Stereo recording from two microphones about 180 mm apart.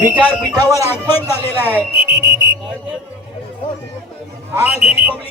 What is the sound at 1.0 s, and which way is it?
Speech, 10° left (ahead or behind).